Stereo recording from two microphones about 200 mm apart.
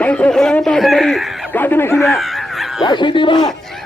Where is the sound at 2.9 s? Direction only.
25° left (ahead or behind).